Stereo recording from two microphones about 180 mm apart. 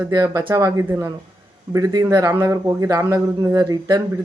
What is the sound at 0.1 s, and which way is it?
Speech, 20° right (ahead or behind).